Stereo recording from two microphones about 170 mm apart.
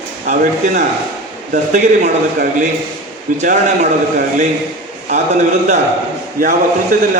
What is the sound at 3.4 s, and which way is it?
A man's voice, 50° right (ahead or behind).